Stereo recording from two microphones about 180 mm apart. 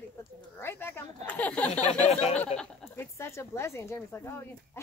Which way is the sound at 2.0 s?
35° left (ahead or behind).